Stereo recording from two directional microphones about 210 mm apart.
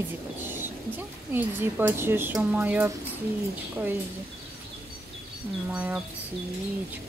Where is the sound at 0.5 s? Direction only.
10° right (ahead or behind).